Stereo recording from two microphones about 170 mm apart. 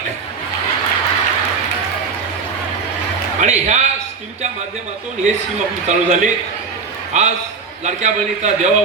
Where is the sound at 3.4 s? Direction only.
40° right (ahead or behind).